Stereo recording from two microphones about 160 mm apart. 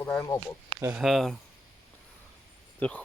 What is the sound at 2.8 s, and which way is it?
Speech, 10° left (ahead or behind).